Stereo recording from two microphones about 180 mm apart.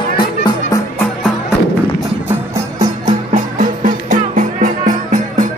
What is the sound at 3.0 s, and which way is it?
Music, 45° right (ahead or behind).